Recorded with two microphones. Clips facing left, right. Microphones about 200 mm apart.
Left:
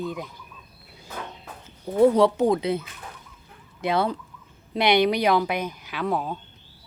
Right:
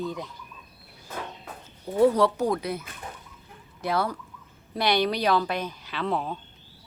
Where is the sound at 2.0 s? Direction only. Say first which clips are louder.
Left 3 dB; 20° left (ahead or behind).